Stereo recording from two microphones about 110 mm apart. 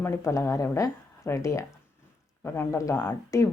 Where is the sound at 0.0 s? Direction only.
25° left (ahead or behind).